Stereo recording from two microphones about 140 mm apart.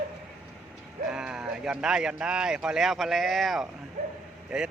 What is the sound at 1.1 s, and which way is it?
Speech, 5° right (ahead or behind).